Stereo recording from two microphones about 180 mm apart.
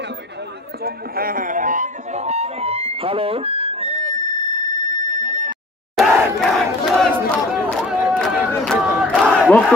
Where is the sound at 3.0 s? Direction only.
30° right (ahead or behind).